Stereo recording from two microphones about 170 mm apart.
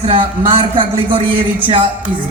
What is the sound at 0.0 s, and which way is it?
A man's voice, 30° right (ahead or behind).